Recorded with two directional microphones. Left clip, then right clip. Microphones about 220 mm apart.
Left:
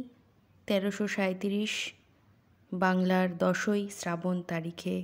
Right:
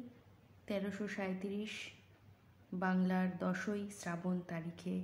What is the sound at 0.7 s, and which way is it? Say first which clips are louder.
Speech: left 11 dB; 40° left (ahead or behind).